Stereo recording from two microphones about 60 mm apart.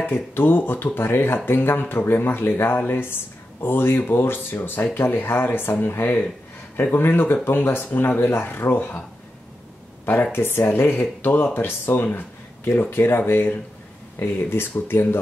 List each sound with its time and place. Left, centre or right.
0.0 s speech: left
8.5 s speech: left
10.3 s speech: left